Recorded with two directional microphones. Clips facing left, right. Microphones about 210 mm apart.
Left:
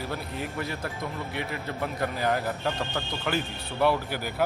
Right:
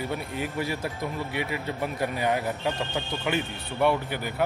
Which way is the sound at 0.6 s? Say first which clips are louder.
Right 4 dB; 5° right (ahead or behind).